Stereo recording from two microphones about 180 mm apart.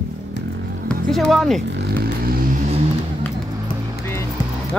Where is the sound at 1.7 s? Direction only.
65° right (ahead or behind).